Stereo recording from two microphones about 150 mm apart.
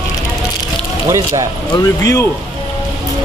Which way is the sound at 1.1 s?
20° right (ahead or behind).